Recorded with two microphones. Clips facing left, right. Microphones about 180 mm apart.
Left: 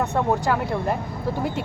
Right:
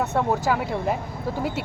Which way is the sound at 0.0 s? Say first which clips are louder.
Left 1 dB; 5° right (ahead or behind).